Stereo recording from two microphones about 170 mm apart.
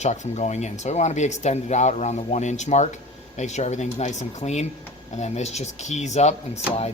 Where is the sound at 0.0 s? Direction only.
45° left (ahead or behind).